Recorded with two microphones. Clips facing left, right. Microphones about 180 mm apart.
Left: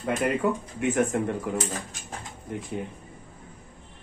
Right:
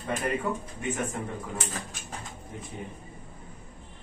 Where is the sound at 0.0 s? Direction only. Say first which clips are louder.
Left 5 dB; 75° left (ahead or behind).